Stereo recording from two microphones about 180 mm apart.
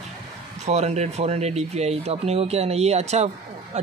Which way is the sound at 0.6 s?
40° right (ahead or behind).